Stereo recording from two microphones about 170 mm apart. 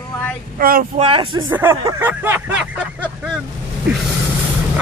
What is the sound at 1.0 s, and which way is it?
Speech, 30° right (ahead or behind).